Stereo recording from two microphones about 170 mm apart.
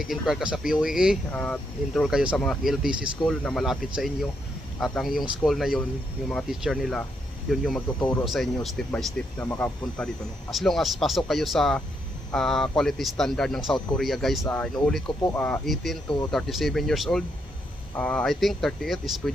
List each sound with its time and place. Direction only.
0.0 s speech: centre (ahead or behind)
8.9 s speech: 10° left (ahead or behind)
10.5 s speech: centre (ahead or behind)
15.0 s speech: 20° left (ahead or behind)
15.4 s speech: 5° left (ahead or behind)